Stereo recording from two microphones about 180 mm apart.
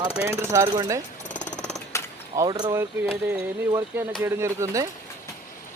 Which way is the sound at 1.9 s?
15° left (ahead or behind).